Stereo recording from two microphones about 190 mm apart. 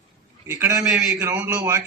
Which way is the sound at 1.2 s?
15° right (ahead or behind).